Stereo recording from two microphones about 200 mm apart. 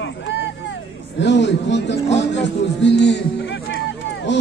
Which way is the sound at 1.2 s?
60° left (ahead or behind).